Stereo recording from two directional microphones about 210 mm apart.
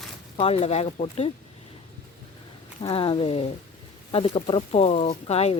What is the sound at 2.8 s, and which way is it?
Speech, 25° left (ahead or behind).